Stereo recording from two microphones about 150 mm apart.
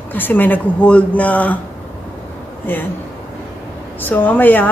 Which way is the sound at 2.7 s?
10° left (ahead or behind).